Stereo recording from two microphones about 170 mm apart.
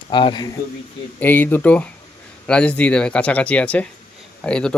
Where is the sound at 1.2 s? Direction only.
10° left (ahead or behind).